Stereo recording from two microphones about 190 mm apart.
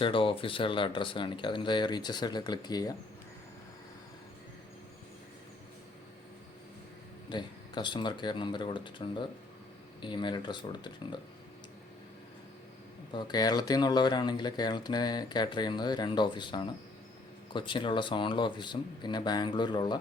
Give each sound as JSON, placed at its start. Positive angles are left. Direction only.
{"t": 0.0, "sound": "speech", "side_deg": 30}
{"t": 7.3, "sound": "speech", "side_deg": 25}
{"t": 13.1, "sound": "speech", "side_deg": 20}